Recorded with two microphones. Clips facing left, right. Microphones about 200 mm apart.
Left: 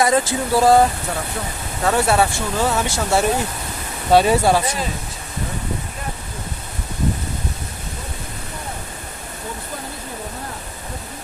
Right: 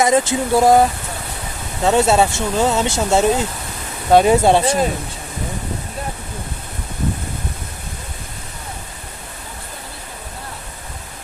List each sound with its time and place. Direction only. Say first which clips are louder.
0.0 s speech: right 2 dB; 20° right (ahead or behind)
1.8 s speech: right 3 dB; 20° right (ahead or behind)